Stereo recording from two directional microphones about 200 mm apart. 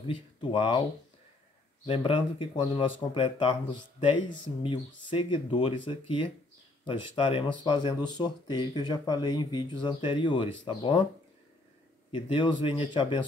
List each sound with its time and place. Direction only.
0.1 s speech: 25° left (ahead or behind)
1.9 s speech: 25° left (ahead or behind)
12.1 s speech: 25° left (ahead or behind)